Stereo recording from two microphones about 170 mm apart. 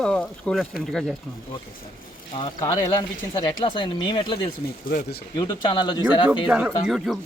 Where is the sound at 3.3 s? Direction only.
30° left (ahead or behind).